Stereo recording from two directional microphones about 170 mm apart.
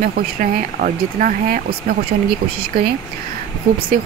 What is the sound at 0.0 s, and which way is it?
Speech, 55° right (ahead or behind).